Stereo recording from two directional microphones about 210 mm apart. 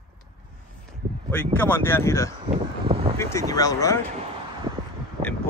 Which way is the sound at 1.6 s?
10° left (ahead or behind).